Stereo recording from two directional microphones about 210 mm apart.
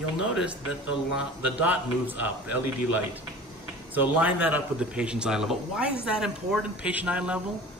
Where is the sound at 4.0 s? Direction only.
10° right (ahead or behind).